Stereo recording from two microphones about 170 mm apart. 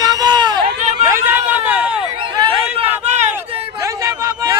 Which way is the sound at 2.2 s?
30° right (ahead or behind).